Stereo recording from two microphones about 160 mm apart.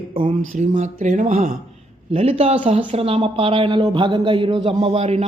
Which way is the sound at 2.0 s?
40° right (ahead or behind).